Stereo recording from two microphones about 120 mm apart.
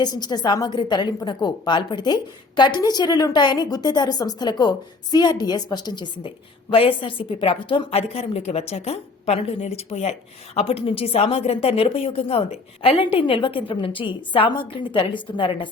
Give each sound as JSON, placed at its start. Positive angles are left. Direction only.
{"t": 0.0, "sound": "a woman's voice", "side_deg": 35}